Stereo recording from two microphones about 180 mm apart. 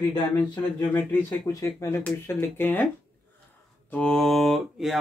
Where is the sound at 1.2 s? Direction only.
20° left (ahead or behind).